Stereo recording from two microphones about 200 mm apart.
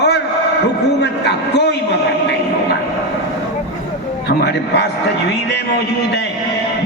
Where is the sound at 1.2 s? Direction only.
55° left (ahead or behind).